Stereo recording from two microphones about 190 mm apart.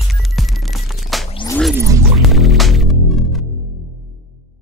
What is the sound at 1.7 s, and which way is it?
Music, 15° right (ahead or behind).